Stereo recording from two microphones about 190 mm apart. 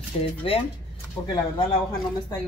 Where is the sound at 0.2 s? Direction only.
30° left (ahead or behind).